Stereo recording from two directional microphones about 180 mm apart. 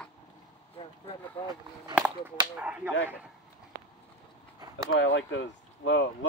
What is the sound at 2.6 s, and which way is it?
Speech, 5° right (ahead or behind).